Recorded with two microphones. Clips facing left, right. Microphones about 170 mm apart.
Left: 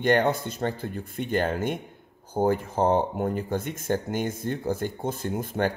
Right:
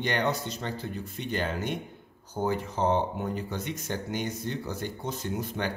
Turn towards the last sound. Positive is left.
turn(degrees=50)  # may be behind; listen again after turning